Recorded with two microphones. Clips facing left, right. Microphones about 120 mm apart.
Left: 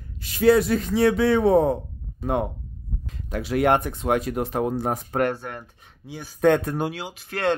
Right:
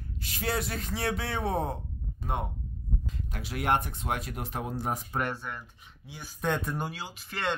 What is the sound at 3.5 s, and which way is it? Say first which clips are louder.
Speech: left 8 dB; 90° left.